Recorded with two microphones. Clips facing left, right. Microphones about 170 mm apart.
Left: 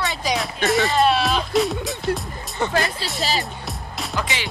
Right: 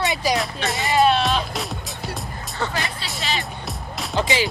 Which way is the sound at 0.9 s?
Centre (ahead or behind).